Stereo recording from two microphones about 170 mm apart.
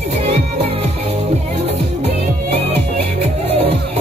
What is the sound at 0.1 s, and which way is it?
Music, 40° right (ahead or behind).